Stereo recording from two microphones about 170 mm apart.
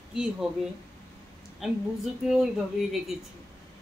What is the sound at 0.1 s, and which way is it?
Speech, 5° right (ahead or behind).